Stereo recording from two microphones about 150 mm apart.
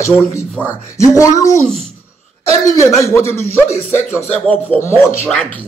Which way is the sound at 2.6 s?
20° left (ahead or behind).